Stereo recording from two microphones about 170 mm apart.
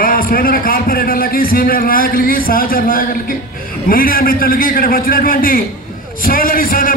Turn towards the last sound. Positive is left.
turn(degrees=55)  # may be behind; listen again after turning